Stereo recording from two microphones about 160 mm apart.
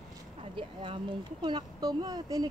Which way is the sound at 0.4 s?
35° right (ahead or behind).